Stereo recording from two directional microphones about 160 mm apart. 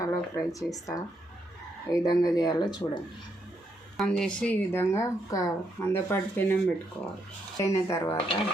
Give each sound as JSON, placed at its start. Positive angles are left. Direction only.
{"t": 0.0, "sound": "speech", "side_deg": 20}
{"t": 3.9, "sound": "speech", "side_deg": 5}
{"t": 7.6, "sound": "speech", "side_deg": 20}
{"t": 8.0, "sound": "dishes", "side_deg": 30}